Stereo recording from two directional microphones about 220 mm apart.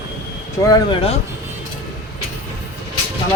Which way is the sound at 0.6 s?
20° left (ahead or behind).